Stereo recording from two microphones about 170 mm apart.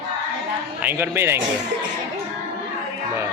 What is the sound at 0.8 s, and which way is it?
Speech, 10° right (ahead or behind).